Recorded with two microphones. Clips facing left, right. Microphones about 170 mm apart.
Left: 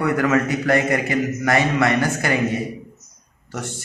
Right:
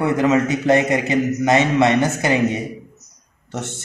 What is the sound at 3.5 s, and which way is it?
Speech, 25° right (ahead or behind).